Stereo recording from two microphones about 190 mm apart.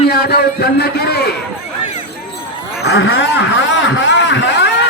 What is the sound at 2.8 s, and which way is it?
Speech, 65° left (ahead or behind).